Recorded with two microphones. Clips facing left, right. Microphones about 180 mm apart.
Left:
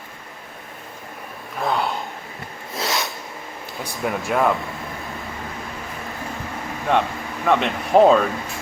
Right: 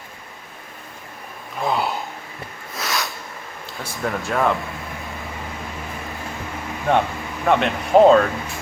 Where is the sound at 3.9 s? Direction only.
Centre (ahead or behind).